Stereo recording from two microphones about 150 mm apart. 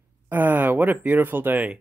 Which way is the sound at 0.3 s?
10° right (ahead or behind).